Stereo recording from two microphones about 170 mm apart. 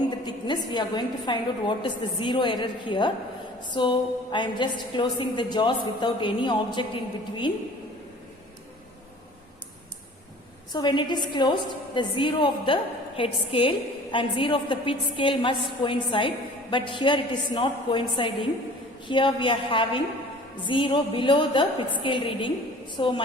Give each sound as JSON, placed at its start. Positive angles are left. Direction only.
{"t": 0.3, "sound": "a woman's voice", "side_deg": 25}
{"t": 10.7, "sound": "a woman's voice", "side_deg": 25}